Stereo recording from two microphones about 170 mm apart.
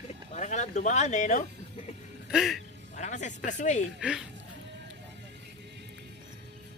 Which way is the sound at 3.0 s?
45° left (ahead or behind).